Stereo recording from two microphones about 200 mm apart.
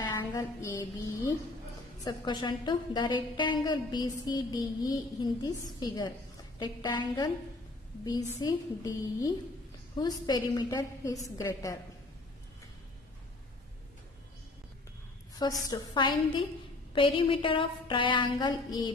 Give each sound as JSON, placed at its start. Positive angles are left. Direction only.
{"t": 0.0, "sound": "a woman's voice", "side_deg": 20}
{"t": 15.7, "sound": "a woman's voice", "side_deg": 20}